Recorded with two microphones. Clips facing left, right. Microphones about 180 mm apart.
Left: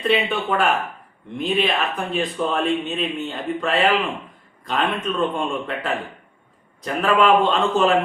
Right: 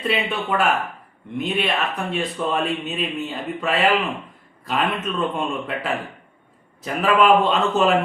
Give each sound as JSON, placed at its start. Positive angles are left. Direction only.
{"t": 0.1, "sound": "speech", "side_deg": 0}